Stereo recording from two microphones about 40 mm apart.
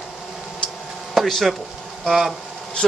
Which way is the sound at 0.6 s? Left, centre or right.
Left.